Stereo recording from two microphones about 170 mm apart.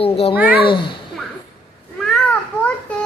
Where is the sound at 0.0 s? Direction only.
35° left (ahead or behind).